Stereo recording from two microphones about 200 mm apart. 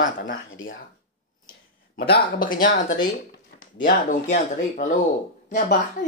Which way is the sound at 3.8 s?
40° left (ahead or behind).